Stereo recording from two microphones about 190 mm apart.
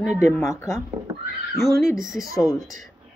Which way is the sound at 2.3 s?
20° left (ahead or behind).